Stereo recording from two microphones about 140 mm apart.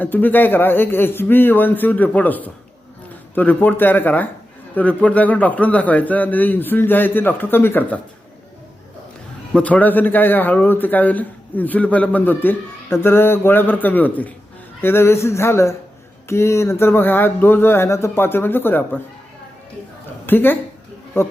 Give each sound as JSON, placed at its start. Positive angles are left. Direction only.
{"t": 0.0, "sound": "a man's voice", "side_deg": 15}
{"t": 9.5, "sound": "a man's voice", "side_deg": 10}
{"t": 14.8, "sound": "a sound", "side_deg": 15}
{"t": 16.3, "sound": "a man's voice", "side_deg": 20}
{"t": 20.2, "sound": "a woman's voice", "side_deg": 15}